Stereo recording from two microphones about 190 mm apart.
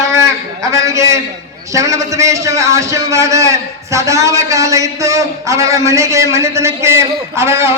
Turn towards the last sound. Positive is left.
turn(degrees=-15)  # may be behind; listen again after turning